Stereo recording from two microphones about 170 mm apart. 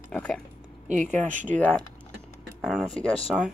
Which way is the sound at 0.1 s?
5° left (ahead or behind).